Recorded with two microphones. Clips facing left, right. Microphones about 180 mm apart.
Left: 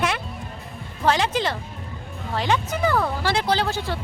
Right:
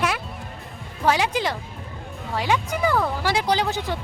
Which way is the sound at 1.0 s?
10° right (ahead or behind).